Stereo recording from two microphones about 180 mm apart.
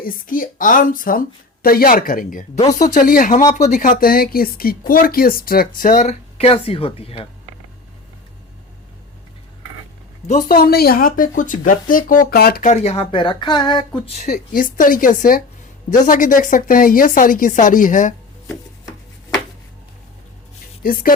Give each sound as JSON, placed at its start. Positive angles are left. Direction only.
{"t": 0.0, "sound": "speech", "side_deg": 50}
{"t": 10.2, "sound": "speech", "side_deg": 50}
{"t": 12.6, "sound": "speech", "side_deg": 40}
{"t": 20.8, "sound": "speech", "side_deg": 50}